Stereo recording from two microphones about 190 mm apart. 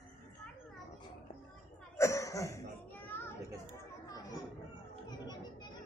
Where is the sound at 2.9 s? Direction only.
10° left (ahead or behind).